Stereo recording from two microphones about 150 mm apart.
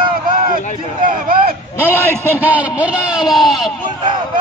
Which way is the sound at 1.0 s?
75° right (ahead or behind).